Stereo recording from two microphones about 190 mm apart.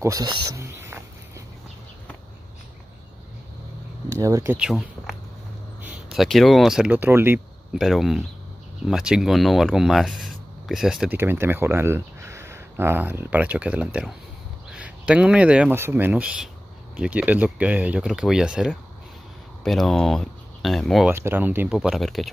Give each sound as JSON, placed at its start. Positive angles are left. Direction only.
{"t": 0.0, "sound": "cricket", "side_deg": -20}
{"t": 4.1, "sound": "speech", "side_deg": -15}
{"t": 4.6, "sound": "speech", "side_deg": 0}
{"t": 7.7, "sound": "speech", "side_deg": 0}
{"t": 21.1, "sound": "speech", "side_deg": -10}